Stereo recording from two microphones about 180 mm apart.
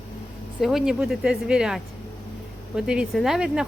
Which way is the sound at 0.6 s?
Centre (ahead or behind).